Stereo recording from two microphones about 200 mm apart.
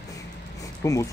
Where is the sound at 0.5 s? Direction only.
15° left (ahead or behind).